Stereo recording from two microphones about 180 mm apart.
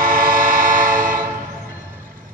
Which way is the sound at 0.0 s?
50° right (ahead or behind).